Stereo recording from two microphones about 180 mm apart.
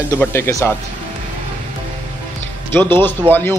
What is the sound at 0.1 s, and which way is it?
Speech, 15° left (ahead or behind).